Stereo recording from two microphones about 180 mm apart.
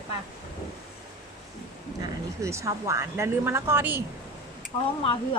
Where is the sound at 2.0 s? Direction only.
15° right (ahead or behind).